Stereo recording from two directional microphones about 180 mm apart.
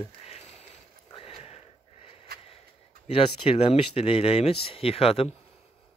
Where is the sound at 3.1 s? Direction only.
30° left (ahead or behind).